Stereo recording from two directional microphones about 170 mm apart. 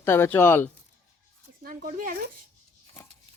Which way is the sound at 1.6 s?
55° right (ahead or behind).